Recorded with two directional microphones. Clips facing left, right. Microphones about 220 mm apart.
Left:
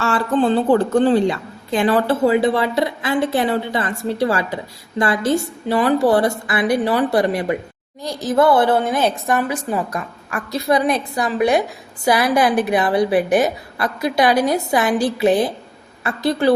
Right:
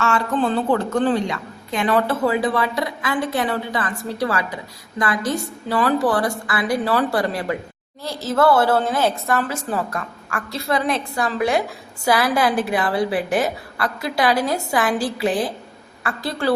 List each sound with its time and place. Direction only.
0.0 s a woman's voice: 30° left (ahead or behind)